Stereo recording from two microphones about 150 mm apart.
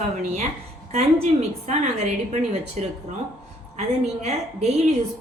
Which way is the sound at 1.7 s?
50° right (ahead or behind).